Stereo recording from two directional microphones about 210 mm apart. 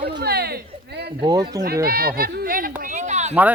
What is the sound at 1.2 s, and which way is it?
Speech, 15° right (ahead or behind).